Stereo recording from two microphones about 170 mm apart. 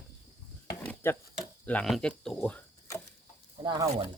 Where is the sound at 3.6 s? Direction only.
25° right (ahead or behind).